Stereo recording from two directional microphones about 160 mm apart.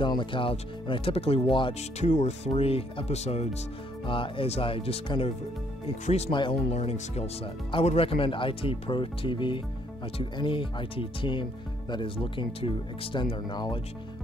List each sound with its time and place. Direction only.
0.0 s speech: 30° left (ahead or behind)
6.3 s speech: 30° left (ahead or behind)